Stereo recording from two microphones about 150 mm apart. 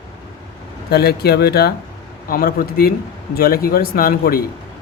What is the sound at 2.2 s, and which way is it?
Speech, 75° left (ahead or behind).